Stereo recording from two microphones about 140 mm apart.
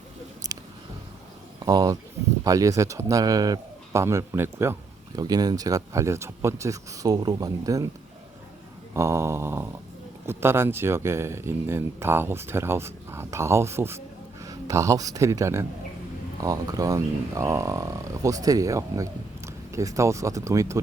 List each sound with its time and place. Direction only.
0.4 s a sound: 25° right (ahead or behind)
1.5 s speech: 25° right (ahead or behind)
5.1 s speech: 30° right (ahead or behind)
8.9 s speech: 20° right (ahead or behind)